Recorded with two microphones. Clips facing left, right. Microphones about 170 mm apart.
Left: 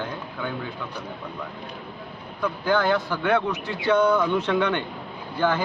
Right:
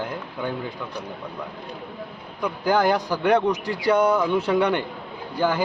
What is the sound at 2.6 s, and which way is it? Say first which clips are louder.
Speech: right 2 dB; 40° right (ahead or behind).